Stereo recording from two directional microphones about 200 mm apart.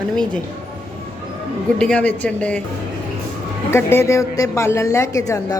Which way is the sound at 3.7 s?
10° left (ahead or behind).